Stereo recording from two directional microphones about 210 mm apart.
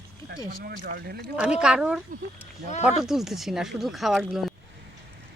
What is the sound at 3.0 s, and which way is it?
Speech, centre (ahead or behind).